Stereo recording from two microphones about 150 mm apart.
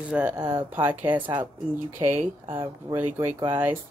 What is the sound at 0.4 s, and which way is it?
Speech, 25° right (ahead or behind).